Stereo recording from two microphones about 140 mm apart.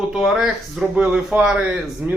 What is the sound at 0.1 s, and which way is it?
A man's voice, centre (ahead or behind).